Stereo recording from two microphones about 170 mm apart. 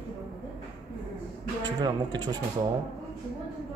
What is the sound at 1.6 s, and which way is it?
Speech, 25° right (ahead or behind).